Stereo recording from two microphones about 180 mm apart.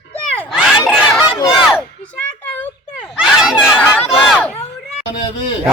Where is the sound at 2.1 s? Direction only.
5° left (ahead or behind).